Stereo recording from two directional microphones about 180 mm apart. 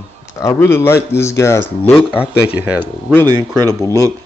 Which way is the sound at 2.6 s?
10° right (ahead or behind).